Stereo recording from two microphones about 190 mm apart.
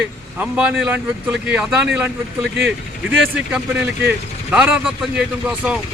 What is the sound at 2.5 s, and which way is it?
Speech, 75° right (ahead or behind).